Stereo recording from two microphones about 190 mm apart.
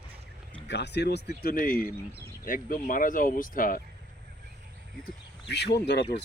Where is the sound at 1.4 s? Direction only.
50° left (ahead or behind).